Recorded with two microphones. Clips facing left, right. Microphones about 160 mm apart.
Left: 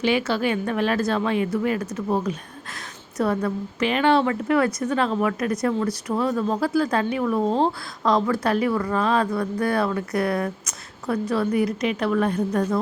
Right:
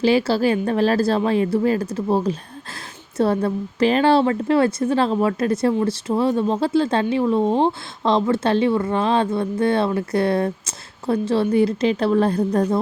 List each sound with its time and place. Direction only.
0.0 s a woman's voice: 35° right (ahead or behind)